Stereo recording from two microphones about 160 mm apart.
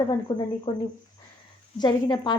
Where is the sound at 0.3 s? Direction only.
25° left (ahead or behind).